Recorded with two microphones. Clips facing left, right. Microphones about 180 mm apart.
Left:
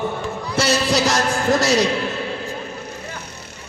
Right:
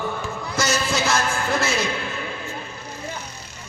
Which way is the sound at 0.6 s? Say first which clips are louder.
Left 5 dB; 35° left (ahead or behind).